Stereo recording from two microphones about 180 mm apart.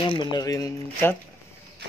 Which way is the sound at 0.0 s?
25° left (ahead or behind).